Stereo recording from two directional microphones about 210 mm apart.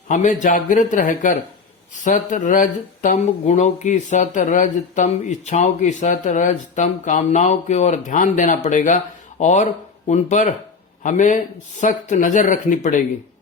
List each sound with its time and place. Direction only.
0.1 s speech: 35° left (ahead or behind)